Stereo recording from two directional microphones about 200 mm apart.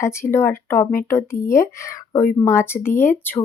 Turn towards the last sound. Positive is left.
turn(degrees=10)  # may be behind; listen again after turning